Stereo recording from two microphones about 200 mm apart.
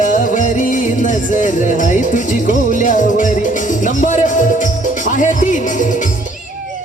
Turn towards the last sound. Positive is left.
turn(degrees=40)  # may be behind; listen again after turning